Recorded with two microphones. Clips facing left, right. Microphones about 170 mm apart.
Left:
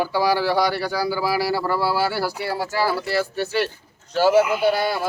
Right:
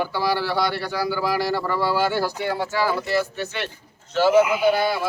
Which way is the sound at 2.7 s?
40° left (ahead or behind).